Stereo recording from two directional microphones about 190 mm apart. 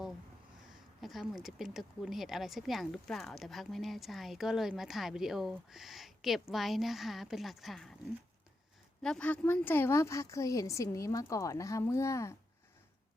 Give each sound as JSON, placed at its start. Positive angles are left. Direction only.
{"t": 0.7, "sound": "speech", "side_deg": 0}
{"t": 9.0, "sound": "a woman's voice", "side_deg": 5}